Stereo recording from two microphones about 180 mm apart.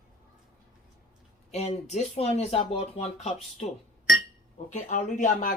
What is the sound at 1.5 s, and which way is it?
Speech, 35° left (ahead or behind).